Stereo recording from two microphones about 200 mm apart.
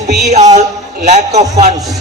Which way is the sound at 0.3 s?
35° right (ahead or behind).